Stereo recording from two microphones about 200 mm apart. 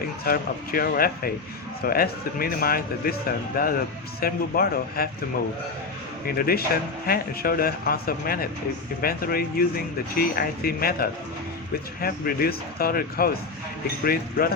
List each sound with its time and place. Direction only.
0.3 s speech: 45° left (ahead or behind)
6.2 s speech: 50° left (ahead or behind)